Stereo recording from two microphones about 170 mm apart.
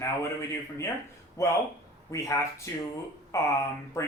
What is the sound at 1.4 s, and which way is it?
Speech, 15° left (ahead or behind).